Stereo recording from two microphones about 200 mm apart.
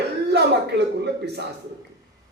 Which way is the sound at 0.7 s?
55° right (ahead or behind).